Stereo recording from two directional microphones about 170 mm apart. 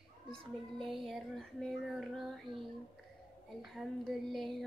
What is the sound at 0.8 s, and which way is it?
Child singing, centre (ahead or behind).